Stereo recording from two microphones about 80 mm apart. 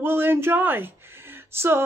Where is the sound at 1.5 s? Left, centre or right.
Right.